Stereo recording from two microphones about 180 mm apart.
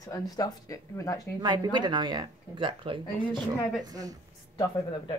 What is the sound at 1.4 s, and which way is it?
Speech, 25° right (ahead or behind).